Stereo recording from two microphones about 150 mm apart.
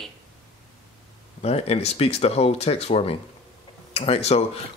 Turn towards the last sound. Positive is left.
turn(degrees=45)  # may be behind; listen again after turning